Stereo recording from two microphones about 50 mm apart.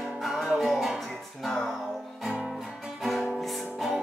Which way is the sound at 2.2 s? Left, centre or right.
Centre.